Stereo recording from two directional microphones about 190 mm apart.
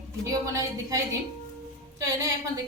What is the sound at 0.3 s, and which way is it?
A woman's voice, 15° right (ahead or behind).